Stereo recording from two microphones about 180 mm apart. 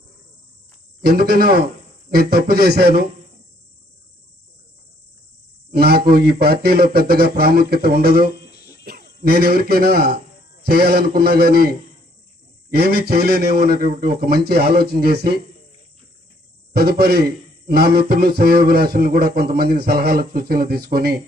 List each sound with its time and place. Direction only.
1.0 s a man's voice: 55° right (ahead or behind)
5.7 s a man's voice: 60° right (ahead or behind)
8.4 s a sound: 65° left (ahead or behind)
8.8 s a sound: 55° right (ahead or behind)
9.2 s a man's voice: 60° right (ahead or behind)
12.7 s a man's voice: 60° right (ahead or behind)
16.7 s a man's voice: 60° right (ahead or behind)